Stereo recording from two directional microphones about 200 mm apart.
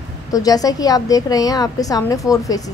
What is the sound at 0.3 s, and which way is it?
A woman's voice, 20° left (ahead or behind).